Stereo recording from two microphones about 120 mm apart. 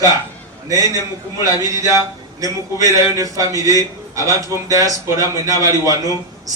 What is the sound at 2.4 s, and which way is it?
A man's voice, 30° right (ahead or behind).